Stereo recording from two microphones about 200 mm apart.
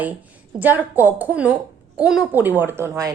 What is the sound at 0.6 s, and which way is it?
A woman's voice, 10° right (ahead or behind).